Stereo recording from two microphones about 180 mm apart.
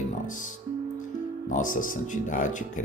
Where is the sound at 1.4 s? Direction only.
45° left (ahead or behind).